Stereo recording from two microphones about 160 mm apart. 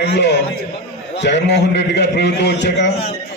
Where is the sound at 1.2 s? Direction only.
90° left.